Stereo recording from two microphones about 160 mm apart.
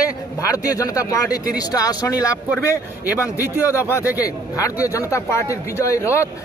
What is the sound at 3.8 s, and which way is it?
Speech, 20° left (ahead or behind).